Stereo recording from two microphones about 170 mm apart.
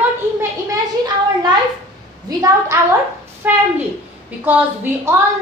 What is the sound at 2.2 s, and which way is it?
Speech, 20° right (ahead or behind).